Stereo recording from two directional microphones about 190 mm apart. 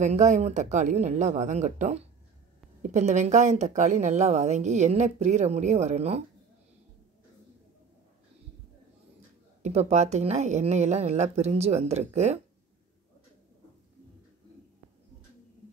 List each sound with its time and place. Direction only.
0.0 s a woman's voice: 40° right (ahead or behind)
9.6 s a woman's voice: 35° right (ahead or behind)